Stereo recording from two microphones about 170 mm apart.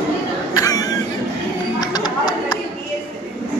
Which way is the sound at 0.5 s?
20° left (ahead or behind).